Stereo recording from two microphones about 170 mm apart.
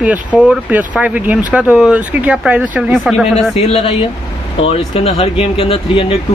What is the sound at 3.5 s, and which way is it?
Speech, 35° left (ahead or behind).